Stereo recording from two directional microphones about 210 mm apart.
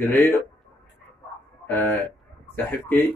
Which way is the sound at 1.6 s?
10° left (ahead or behind).